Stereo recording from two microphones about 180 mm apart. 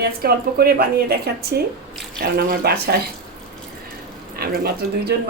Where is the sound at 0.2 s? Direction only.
60° right (ahead or behind).